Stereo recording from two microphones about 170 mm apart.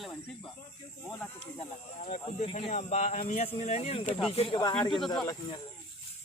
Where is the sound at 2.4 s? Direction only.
40° left (ahead or behind).